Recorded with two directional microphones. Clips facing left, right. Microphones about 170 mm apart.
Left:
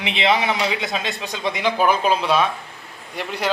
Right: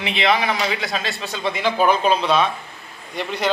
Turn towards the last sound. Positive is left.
turn(degrees=10)  # may be behind; listen again after turning